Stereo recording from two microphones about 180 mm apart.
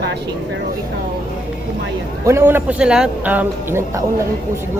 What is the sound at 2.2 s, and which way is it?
A man's voice, 15° right (ahead or behind).